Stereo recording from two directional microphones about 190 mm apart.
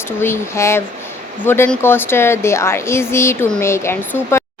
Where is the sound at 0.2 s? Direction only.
15° left (ahead or behind).